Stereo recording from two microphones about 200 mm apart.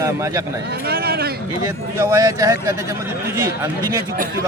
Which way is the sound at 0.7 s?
50° right (ahead or behind).